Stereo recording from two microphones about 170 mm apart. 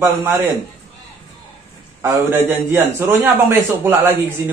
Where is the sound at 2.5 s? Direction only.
10° right (ahead or behind).